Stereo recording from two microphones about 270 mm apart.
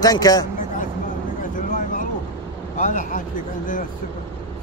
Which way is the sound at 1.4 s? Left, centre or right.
Left.